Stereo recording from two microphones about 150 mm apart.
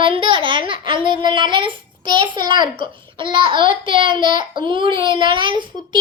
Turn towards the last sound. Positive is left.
turn(degrees=-30)  # may be behind; listen again after turning